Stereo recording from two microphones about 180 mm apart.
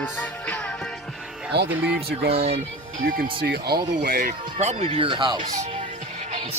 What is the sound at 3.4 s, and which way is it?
Speech, 60° right (ahead or behind).